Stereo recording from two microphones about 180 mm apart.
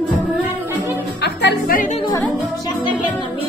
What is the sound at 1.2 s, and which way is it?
Music, 65° left (ahead or behind).